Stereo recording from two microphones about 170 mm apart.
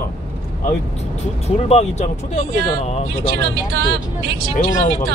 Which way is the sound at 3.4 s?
70° right (ahead or behind).